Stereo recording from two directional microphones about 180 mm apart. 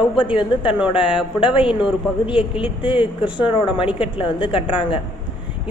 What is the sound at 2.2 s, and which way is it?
Speech, 30° left (ahead or behind).